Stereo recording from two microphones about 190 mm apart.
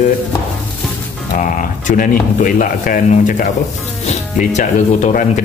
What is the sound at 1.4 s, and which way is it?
Speech, 45° left (ahead or behind).